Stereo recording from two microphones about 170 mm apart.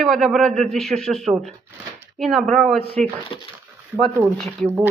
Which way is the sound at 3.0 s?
45° right (ahead or behind).